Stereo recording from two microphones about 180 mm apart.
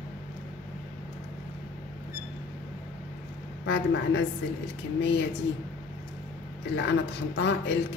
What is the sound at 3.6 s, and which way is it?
Speech, 85° left.